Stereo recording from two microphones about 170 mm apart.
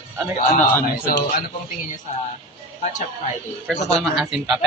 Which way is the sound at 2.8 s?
45° left (ahead or behind).